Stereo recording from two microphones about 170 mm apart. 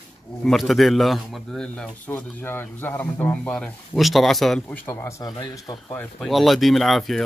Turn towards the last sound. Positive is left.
turn(degrees=0)  # may be behind; listen again after turning